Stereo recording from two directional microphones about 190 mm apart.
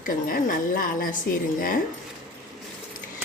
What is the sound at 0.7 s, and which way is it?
Speech, 50° left (ahead or behind).